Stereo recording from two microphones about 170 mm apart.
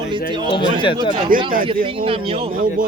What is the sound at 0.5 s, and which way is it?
Speech, 30° left (ahead or behind).